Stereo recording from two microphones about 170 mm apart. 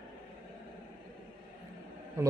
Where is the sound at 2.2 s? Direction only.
15° right (ahead or behind).